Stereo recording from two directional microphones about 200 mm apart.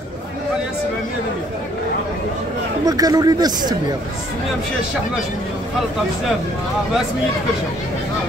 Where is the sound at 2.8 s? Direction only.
20° right (ahead or behind).